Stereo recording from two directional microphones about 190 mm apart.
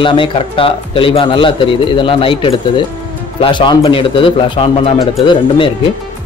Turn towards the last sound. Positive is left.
turn(degrees=25)  # may be behind; listen again after turning